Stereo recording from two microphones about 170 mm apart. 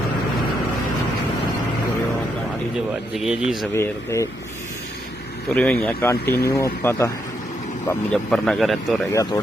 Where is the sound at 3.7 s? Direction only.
15° left (ahead or behind).